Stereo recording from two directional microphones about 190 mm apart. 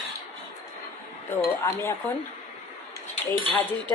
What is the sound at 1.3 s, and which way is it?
Speech, 10° left (ahead or behind).